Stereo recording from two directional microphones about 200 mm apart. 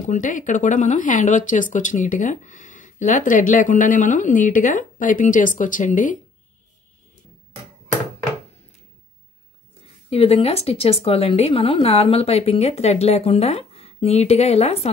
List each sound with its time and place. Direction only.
0.0 s speech: 40° left (ahead or behind)
10.0 s speech: 30° left (ahead or behind)